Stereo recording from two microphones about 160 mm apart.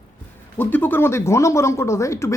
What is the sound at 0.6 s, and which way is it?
Speech, 10° left (ahead or behind).